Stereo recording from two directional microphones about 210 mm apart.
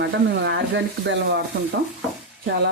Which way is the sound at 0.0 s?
55° right (ahead or behind).